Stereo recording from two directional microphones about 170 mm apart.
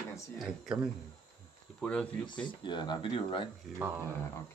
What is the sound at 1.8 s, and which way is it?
Speech, 5° left (ahead or behind).